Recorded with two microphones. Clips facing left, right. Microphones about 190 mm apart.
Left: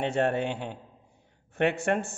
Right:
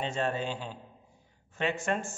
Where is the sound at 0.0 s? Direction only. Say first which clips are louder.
Left 5 dB; 65° left (ahead or behind).